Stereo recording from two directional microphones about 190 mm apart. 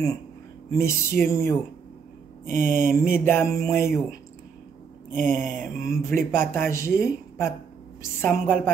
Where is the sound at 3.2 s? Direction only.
10° left (ahead or behind).